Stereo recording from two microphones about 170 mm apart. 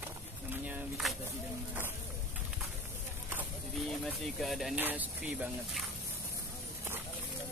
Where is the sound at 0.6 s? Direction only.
5° right (ahead or behind).